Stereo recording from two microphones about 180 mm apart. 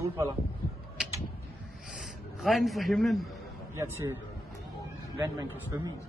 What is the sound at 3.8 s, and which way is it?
Speech, 15° right (ahead or behind).